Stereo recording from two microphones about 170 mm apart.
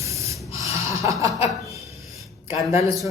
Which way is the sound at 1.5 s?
Centre (ahead or behind).